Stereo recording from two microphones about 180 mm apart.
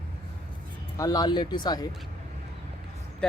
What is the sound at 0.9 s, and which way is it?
Speech, 20° left (ahead or behind).